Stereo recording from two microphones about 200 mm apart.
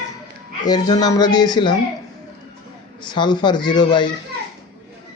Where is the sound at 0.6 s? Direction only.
20° left (ahead or behind).